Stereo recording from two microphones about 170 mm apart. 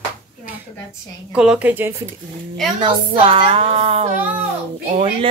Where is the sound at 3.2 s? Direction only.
30° right (ahead or behind).